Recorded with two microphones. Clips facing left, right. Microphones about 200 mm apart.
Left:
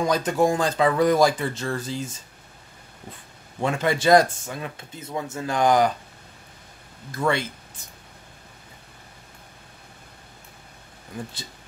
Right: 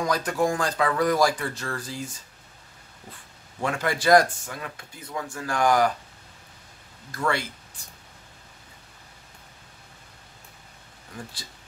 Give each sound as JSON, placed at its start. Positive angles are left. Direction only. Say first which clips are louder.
{"t": 0.0, "sound": "speech", "louder": "left 3 dB", "side_deg": 25}
{"t": 3.6, "sound": "speech", "louder": "left 3 dB", "side_deg": 25}
{"t": 7.1, "sound": "speech", "louder": "left 3 dB", "side_deg": 20}